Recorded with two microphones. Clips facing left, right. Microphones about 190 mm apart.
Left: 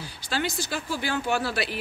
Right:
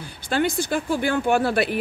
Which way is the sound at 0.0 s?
55° right (ahead or behind).